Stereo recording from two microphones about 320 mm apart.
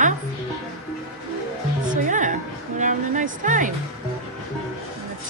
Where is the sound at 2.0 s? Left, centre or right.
Right.